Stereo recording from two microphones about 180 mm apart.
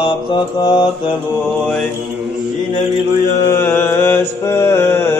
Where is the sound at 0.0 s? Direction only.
30° left (ahead or behind).